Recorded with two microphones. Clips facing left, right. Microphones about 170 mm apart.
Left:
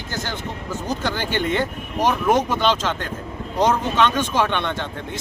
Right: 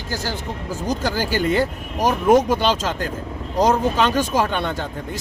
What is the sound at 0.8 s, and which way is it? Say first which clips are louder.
Speech: right 3 dB; 35° right (ahead or behind).